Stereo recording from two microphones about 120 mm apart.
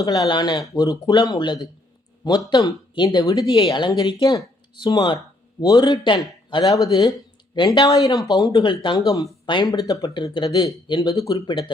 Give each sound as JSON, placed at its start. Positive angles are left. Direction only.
{"t": 0.0, "sound": "speech", "side_deg": 30}
{"t": 8.5, "sound": "speech", "side_deg": 40}